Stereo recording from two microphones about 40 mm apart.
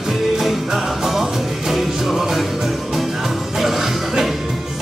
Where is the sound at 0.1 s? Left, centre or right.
Centre.